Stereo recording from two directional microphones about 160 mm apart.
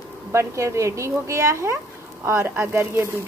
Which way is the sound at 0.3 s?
15° right (ahead or behind).